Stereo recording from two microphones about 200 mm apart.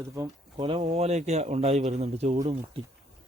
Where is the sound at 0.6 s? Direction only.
25° right (ahead or behind).